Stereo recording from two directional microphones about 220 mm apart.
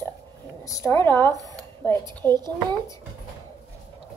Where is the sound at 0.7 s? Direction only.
10° left (ahead or behind).